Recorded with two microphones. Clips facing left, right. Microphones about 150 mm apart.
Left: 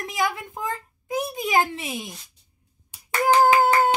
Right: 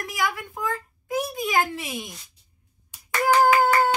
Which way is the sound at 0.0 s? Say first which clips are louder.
Left 1 dB; 25° left (ahead or behind).